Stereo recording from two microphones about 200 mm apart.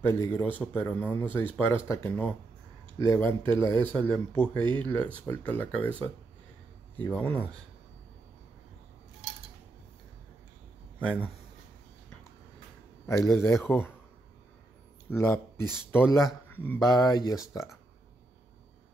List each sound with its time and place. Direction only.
0.0 s speech: 10° left (ahead or behind)
7.0 s speech: 10° left (ahead or behind)
11.0 s speech: 5° right (ahead or behind)
13.0 s a man's voice: 15° left (ahead or behind)
15.0 s speech: 10° left (ahead or behind)